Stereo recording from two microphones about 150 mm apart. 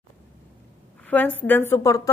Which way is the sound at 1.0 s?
10° left (ahead or behind).